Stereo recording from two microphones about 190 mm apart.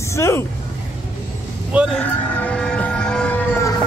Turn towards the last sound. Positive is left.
turn(degrees=15)  # may be behind; listen again after turning